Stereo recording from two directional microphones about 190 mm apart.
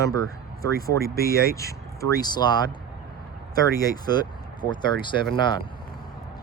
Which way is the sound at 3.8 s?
20° left (ahead or behind).